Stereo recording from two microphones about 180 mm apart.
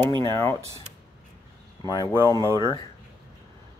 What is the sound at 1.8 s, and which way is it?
Speech, 20° left (ahead or behind).